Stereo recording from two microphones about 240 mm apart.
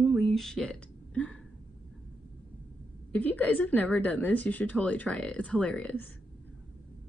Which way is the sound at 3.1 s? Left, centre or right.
Centre.